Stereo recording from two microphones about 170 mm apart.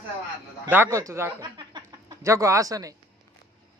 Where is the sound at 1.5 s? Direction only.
20° right (ahead or behind).